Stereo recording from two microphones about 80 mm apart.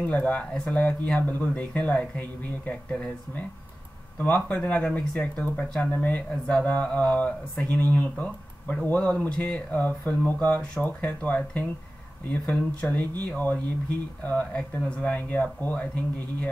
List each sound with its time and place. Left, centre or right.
0.0 s speech: centre